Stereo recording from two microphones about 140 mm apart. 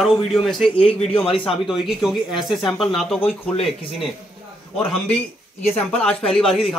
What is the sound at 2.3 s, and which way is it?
Speech, 35° left (ahead or behind).